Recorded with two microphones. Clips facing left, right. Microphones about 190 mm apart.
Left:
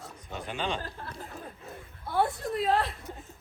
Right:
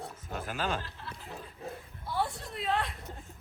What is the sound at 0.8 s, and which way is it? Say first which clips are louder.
Chuckle: left 5 dB; 50° left (ahead or behind).